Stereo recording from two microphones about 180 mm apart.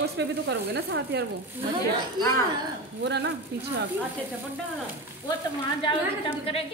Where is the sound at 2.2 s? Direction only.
25° right (ahead or behind).